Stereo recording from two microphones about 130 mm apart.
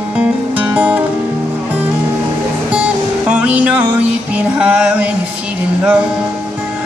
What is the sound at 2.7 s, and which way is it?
Music, 10° right (ahead or behind).